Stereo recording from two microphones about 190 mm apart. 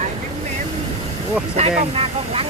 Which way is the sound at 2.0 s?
30° right (ahead or behind).